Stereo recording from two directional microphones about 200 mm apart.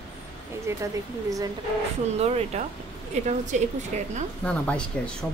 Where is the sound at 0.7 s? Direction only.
15° right (ahead or behind).